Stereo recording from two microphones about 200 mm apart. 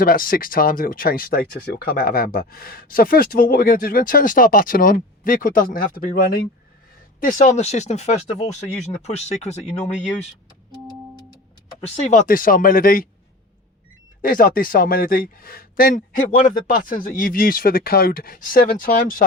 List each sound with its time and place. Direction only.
0.0 s speech: 45° left (ahead or behind)
7.2 s speech: 40° left (ahead or behind)
11.9 s speech: 40° left (ahead or behind)
14.2 s speech: 45° left (ahead or behind)